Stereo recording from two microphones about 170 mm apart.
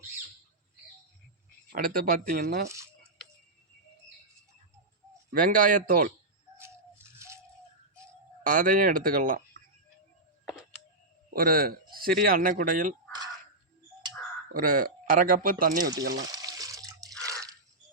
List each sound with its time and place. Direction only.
1.7 s speech: 60° right (ahead or behind)
2.6 s speech: 15° right (ahead or behind)
5.3 s speech: 55° right (ahead or behind)
6.6 s rattle: 15° right (ahead or behind)
8.4 s speech: 50° right (ahead or behind)
10.4 s a sound: 5° right (ahead or behind)
11.3 s speech: 60° right (ahead or behind)
14.5 s speech: 55° right (ahead or behind)
16.0 s speech: 90° right
16.3 s water: 20° right (ahead or behind)
17.2 s drip: 20° right (ahead or behind)